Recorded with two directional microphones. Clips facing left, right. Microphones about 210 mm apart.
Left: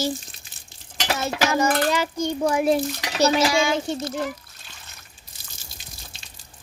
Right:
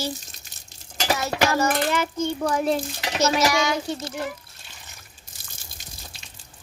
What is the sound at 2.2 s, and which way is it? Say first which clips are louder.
Speech: left 4 dB; 10° left (ahead or behind).